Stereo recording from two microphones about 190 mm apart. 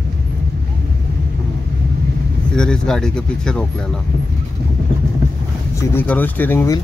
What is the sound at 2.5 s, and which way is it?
Speech, 5° left (ahead or behind).